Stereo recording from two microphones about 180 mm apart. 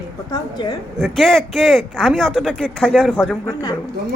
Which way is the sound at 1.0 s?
Centre (ahead or behind).